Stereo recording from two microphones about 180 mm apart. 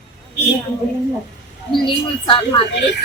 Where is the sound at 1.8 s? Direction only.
30° left (ahead or behind).